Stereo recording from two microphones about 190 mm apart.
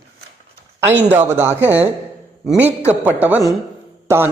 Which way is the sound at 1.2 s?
15° right (ahead or behind).